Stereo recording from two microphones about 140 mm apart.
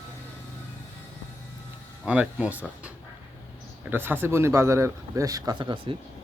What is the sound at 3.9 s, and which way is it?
Speech, 15° right (ahead or behind).